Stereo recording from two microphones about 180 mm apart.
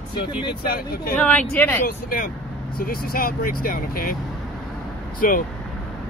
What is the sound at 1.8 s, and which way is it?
Speech, 50° left (ahead or behind).